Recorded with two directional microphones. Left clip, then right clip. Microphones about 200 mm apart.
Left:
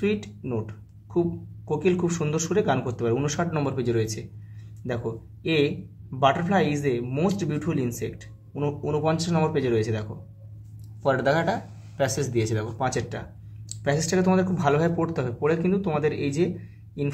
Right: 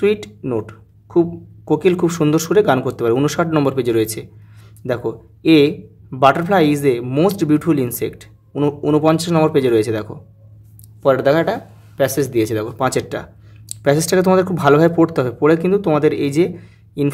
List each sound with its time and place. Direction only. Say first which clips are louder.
0.0 s speech: right 10 dB; 50° right (ahead or behind)
11.0 s speech: right 9 dB; 35° right (ahead or behind)